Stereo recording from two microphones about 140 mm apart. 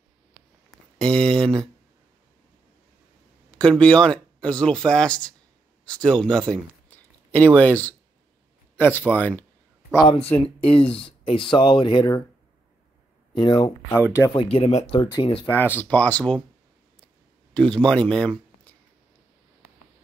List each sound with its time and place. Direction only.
0.7 s a sound: 5° left (ahead or behind)
3.5 s speech: 5° left (ahead or behind)
10.0 s speech: 45° left (ahead or behind)
13.3 s speech: 35° left (ahead or behind)
14.0 s speech: 20° left (ahead or behind)
14.3 s speech: 40° left (ahead or behind)
15.0 s speech: 35° left (ahead or behind)
15.4 s speech: 15° left (ahead or behind)
17.6 s speech: 5° left (ahead or behind)